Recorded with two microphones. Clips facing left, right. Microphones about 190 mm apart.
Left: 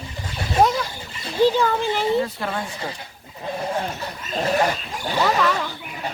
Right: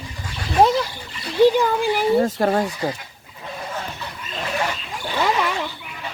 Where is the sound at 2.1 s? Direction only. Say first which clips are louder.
Right 6 dB; 45° right (ahead or behind).